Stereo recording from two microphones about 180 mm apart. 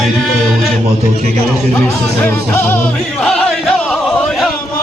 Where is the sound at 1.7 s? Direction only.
10° left (ahead or behind).